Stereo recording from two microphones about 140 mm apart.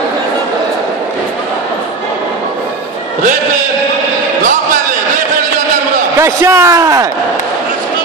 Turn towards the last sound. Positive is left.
turn(degrees=-25)  # may be behind; listen again after turning